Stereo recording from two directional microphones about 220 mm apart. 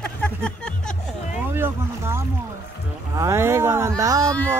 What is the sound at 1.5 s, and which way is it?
Speech, 10° right (ahead or behind).